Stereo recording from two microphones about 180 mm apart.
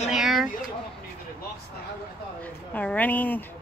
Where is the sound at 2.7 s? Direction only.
10° left (ahead or behind).